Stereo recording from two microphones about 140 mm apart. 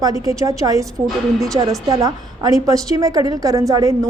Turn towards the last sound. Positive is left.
turn(degrees=-25)  # may be behind; listen again after turning